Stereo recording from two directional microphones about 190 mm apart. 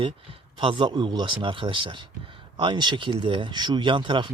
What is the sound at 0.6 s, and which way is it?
Speech, 25° right (ahead or behind).